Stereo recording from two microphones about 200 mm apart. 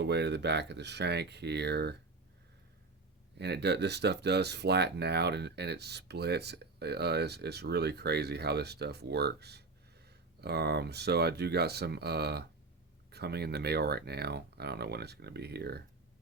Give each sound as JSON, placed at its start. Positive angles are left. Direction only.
{"t": 0.0, "sound": "speech", "side_deg": -60}
{"t": 3.3, "sound": "speech", "side_deg": -55}